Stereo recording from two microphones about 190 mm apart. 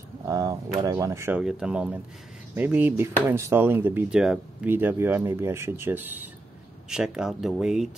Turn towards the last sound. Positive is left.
turn(degrees=0)  # may be behind; listen again after turning